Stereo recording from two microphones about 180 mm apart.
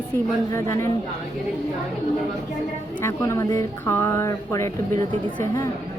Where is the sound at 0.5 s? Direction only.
15° left (ahead or behind).